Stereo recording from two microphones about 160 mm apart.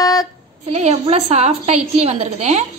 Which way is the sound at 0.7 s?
45° right (ahead or behind).